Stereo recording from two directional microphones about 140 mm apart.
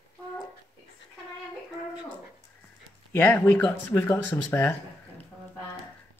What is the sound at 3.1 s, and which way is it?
Speech, 10° left (ahead or behind).